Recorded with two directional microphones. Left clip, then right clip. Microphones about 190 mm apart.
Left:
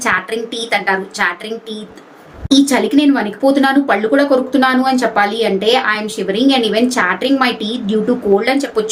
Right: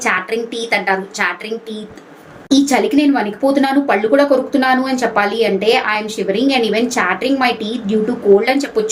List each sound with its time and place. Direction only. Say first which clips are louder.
0.0 s speech: left 1 dB; 20° left (ahead or behind)